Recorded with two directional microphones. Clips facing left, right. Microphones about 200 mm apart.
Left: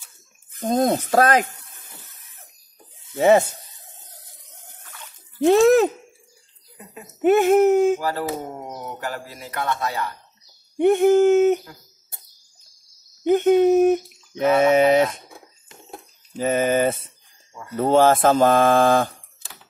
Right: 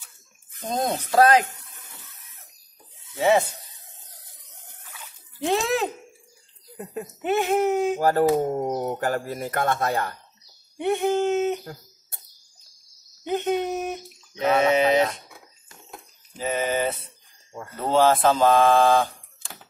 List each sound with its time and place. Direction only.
0.6 s speech: 50° left (ahead or behind)
3.2 s speech: 50° left (ahead or behind)
5.4 s speech: 45° left (ahead or behind)
6.8 s speech: 50° right (ahead or behind)
7.2 s speech: 50° left (ahead or behind)
8.0 s speech: 50° right (ahead or behind)
10.8 s speech: 50° left (ahead or behind)
13.3 s speech: 50° left (ahead or behind)
16.3 s speech: 50° left (ahead or behind)